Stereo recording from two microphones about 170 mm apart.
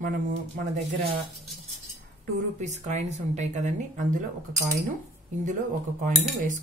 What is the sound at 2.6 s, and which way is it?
Speech, 40° right (ahead or behind).